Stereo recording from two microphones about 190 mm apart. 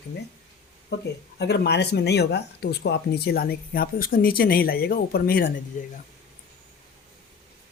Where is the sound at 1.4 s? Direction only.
60° left (ahead or behind); by 5.9 s 45° left (ahead or behind).